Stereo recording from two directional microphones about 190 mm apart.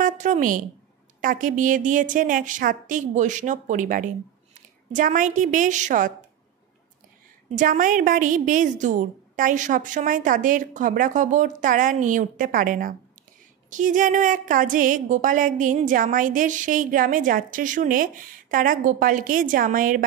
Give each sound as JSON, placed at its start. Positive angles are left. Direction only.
{"t": 0.0, "sound": "a sound", "side_deg": -40}
{"t": 1.2, "sound": "a woman's voice", "side_deg": -45}
{"t": 7.5, "sound": "a woman's voice", "side_deg": -45}